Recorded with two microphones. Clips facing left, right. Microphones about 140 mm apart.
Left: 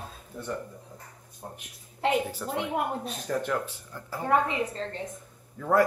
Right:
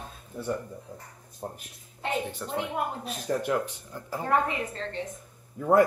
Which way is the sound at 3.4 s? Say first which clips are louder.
Right 2 dB; 15° right (ahead or behind).